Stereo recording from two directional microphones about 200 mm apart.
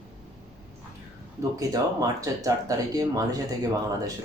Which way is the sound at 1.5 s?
15° right (ahead or behind).